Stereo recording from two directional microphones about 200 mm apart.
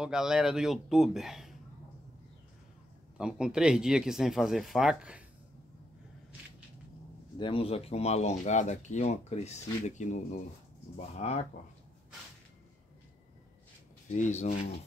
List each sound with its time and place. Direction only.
0.0 s speech: 5° right (ahead or behind)
3.2 s speech: 5° right (ahead or behind)
7.3 s speech: 25° left (ahead or behind)
14.1 s speech: 35° left (ahead or behind)